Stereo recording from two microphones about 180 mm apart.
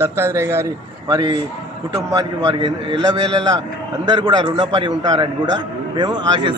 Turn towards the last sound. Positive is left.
turn(degrees=-25)  # may be behind; listen again after turning